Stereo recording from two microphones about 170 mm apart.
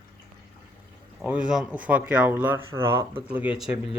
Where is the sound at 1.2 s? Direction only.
5° right (ahead or behind).